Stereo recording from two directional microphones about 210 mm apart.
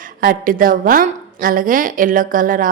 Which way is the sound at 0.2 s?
40° right (ahead or behind).